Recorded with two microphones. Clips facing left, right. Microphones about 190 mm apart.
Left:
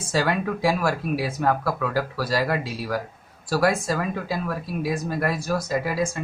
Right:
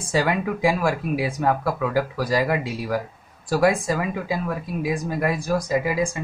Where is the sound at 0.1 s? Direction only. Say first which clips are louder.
Right 1 dB; 15° right (ahead or behind).